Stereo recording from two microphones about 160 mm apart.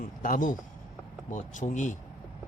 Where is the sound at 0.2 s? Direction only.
60° left (ahead or behind).